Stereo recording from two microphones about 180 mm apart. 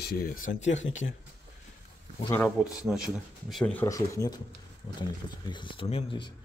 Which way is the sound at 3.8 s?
20° left (ahead or behind).